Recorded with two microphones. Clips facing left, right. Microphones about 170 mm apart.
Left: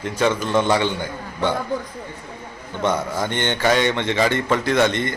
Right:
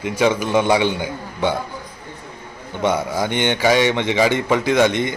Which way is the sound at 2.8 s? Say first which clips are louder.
Right 2 dB; 10° right (ahead or behind).